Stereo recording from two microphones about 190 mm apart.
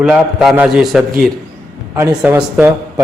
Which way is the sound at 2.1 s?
5° right (ahead or behind).